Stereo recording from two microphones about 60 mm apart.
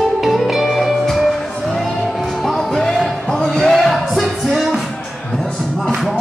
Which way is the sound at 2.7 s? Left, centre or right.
Centre.